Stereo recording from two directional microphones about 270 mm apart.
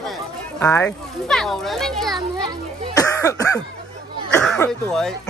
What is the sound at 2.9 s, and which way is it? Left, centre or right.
Speech, centre.